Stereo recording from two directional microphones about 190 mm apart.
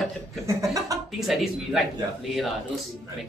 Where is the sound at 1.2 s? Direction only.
Centre (ahead or behind).